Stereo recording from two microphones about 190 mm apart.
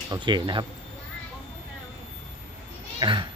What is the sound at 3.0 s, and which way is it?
Speech, 25° right (ahead or behind).